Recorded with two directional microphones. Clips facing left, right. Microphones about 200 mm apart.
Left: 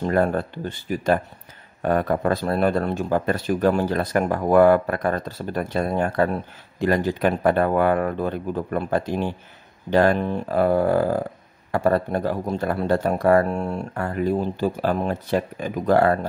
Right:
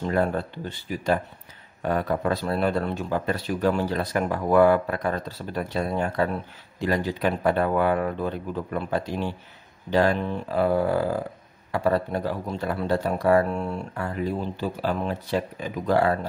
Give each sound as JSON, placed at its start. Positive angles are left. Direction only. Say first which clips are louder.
{"t": 0.0, "sound": "speech", "louder": "left 3 dB", "side_deg": 50}